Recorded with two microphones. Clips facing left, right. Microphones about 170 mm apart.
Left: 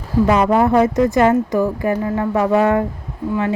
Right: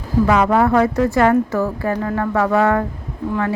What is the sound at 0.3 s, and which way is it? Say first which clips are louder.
Speech: left 1 dB; 20° left (ahead or behind).